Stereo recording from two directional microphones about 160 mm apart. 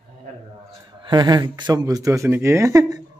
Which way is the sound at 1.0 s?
30° right (ahead or behind).